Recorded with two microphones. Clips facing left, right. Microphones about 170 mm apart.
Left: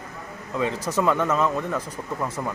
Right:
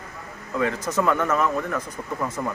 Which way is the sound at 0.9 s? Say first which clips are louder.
Left 1 dB; 15° left (ahead or behind).